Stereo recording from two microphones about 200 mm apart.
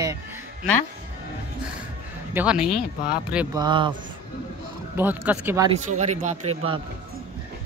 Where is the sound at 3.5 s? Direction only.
25° right (ahead or behind).